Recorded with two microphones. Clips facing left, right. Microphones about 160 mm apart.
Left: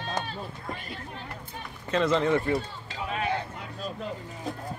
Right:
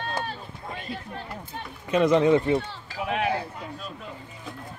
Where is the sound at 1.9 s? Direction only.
15° right (ahead or behind).